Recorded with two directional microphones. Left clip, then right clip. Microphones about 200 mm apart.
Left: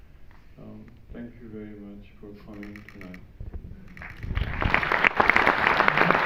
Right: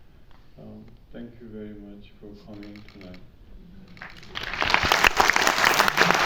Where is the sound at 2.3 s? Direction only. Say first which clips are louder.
Left 1 dB; 40° right (ahead or behind).